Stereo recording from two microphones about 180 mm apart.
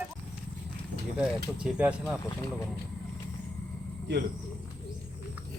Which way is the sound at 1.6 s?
5° right (ahead or behind).